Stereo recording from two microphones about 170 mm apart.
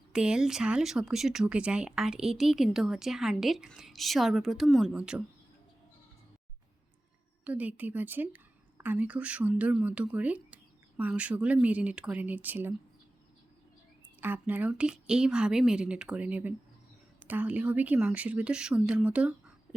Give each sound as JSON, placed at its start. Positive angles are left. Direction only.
{"t": 0.1, "sound": "speech", "side_deg": -5}
{"t": 7.4, "sound": "speech", "side_deg": -10}
{"t": 14.2, "sound": "speech", "side_deg": -10}